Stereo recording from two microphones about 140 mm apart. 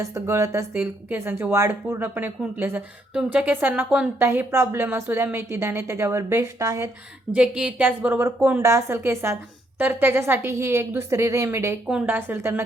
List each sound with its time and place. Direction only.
0.0 s a woman's voice: 20° right (ahead or behind)
7.3 s a woman's voice: 10° right (ahead or behind)